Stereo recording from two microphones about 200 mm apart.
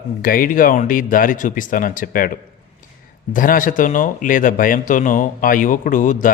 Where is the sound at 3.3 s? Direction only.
45° left (ahead or behind).